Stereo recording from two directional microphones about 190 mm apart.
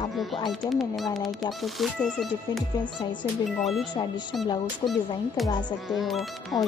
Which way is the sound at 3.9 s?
20° left (ahead or behind).